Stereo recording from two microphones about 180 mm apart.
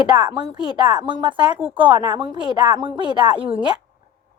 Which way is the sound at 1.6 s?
10° right (ahead or behind).